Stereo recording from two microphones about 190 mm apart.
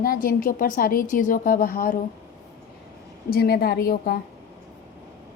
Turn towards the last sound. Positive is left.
turn(degrees=55)  # may be behind; listen again after turning